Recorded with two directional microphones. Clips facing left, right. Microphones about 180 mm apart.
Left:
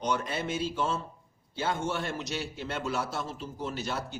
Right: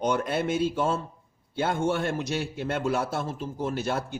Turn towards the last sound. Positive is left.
turn(degrees=-55)  # may be behind; listen again after turning